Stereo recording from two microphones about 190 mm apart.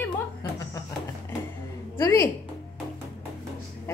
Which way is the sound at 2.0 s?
15° left (ahead or behind).